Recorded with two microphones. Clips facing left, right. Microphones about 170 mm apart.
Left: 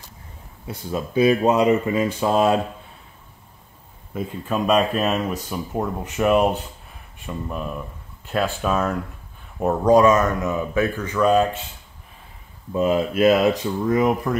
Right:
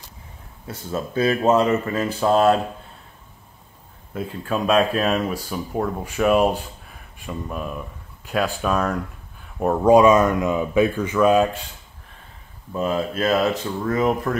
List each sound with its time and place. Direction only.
0.7 s speech: 15° left (ahead or behind)
4.1 s speech: 5° left (ahead or behind)
9.8 s speech: 10° right (ahead or behind)
12.8 s speech: 20° left (ahead or behind)